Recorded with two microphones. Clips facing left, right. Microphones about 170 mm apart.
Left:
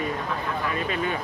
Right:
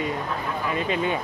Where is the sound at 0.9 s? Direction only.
20° right (ahead or behind).